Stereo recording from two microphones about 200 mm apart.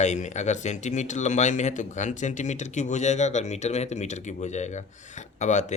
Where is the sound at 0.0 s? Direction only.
35° left (ahead or behind).